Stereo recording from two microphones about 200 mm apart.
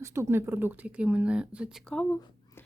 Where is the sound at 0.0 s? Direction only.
15° right (ahead or behind).